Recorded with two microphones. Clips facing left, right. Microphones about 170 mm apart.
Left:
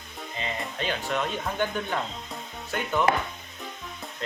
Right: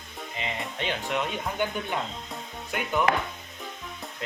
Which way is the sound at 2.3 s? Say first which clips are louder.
Left 1 dB; 10° right (ahead or behind).